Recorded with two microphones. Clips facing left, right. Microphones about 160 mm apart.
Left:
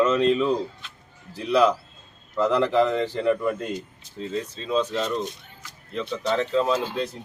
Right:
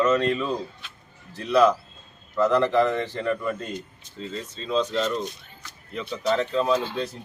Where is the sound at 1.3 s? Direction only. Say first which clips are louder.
Right 1 dB; 10° left (ahead or behind).